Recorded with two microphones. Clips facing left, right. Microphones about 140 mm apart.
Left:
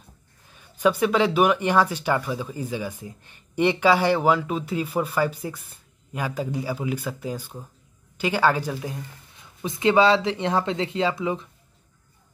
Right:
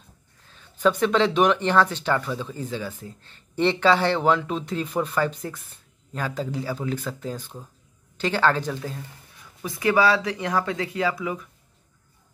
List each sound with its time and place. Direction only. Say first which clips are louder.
0.5 s speech: even; 10° left (ahead or behind)